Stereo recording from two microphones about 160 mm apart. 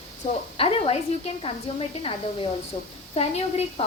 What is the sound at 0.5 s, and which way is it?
A woman's voice, 35° left (ahead or behind).